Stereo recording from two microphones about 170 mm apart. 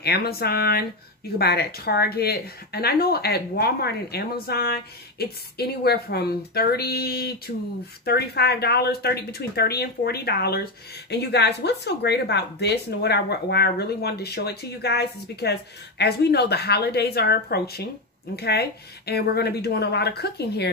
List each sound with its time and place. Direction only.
0.0 s speech: 65° left (ahead or behind)